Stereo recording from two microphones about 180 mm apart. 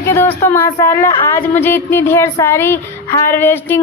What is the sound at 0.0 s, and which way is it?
Female singing, 15° left (ahead or behind).